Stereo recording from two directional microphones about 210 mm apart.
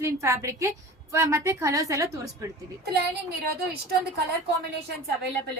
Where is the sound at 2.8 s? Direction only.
50° right (ahead or behind).